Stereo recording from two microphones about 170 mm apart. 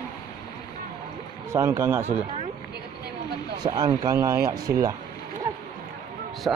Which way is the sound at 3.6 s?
25° right (ahead or behind).